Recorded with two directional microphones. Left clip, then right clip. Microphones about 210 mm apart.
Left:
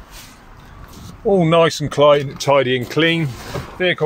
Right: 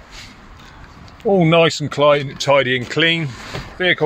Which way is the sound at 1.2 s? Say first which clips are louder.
Even; 10° right (ahead or behind).